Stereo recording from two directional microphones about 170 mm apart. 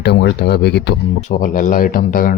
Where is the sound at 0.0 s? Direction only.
80° left.